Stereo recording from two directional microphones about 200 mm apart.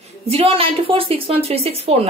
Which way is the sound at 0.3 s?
30° right (ahead or behind).